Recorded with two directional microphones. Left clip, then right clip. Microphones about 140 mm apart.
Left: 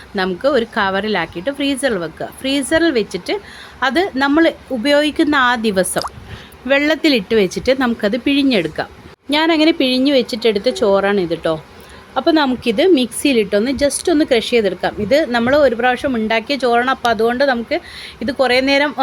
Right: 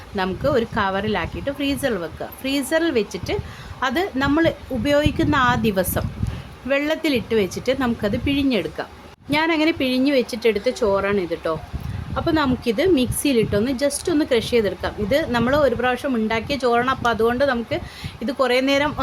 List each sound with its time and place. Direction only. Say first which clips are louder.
0.2 s a woman's voice: left 5 dB; 25° left (ahead or behind)